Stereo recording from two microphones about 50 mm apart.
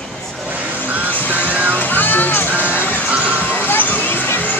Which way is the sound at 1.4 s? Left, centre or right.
Right.